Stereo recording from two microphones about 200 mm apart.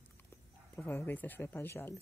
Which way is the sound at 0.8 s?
10° left (ahead or behind).